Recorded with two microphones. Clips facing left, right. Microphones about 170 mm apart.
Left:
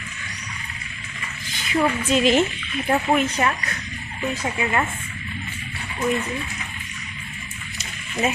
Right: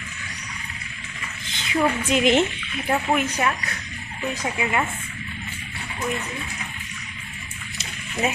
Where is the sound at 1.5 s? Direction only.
20° right (ahead or behind).